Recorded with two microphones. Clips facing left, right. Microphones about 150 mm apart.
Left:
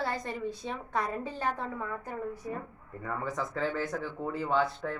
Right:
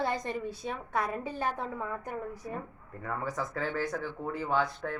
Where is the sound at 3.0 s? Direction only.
5° right (ahead or behind).